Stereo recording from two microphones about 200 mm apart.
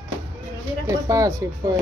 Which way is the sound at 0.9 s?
15° right (ahead or behind).